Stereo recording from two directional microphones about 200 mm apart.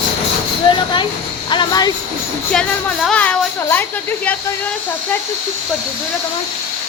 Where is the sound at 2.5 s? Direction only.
5° left (ahead or behind).